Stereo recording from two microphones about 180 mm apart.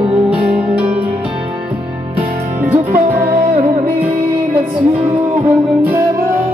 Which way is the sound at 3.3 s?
35° right (ahead or behind).